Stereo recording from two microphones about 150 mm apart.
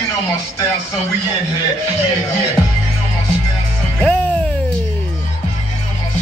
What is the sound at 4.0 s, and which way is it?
Music, 10° left (ahead or behind).